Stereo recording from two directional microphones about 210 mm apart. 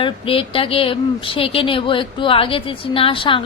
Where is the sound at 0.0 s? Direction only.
25° left (ahead or behind).